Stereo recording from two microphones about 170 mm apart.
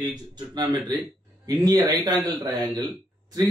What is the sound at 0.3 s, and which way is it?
A man's voice, 25° right (ahead or behind).